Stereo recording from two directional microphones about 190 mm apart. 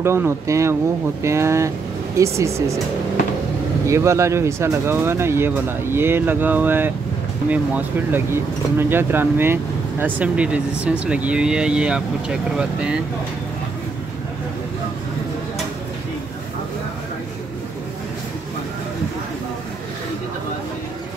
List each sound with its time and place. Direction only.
0.0 s speech: 15° right (ahead or behind)
3.8 s speech: 15° right (ahead or behind)